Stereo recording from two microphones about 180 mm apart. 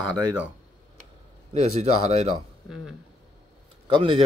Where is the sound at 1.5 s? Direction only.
40° right (ahead or behind).